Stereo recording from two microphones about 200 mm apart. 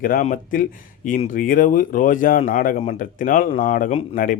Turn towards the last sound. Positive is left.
turn(degrees=45)  # may be behind; listen again after turning